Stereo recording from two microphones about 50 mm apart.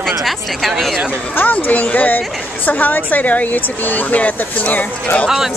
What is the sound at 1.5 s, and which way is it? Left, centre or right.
A woman's voice, left.